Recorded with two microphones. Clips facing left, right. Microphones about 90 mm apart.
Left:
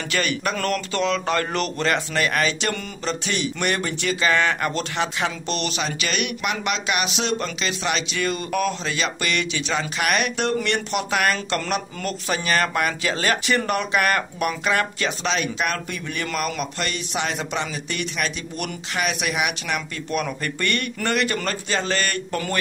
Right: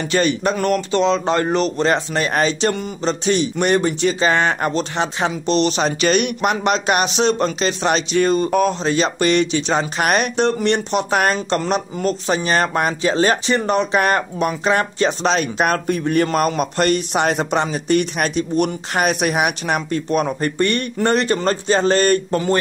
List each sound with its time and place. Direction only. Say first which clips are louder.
0.1 s speech: right 6 dB; 30° right (ahead or behind)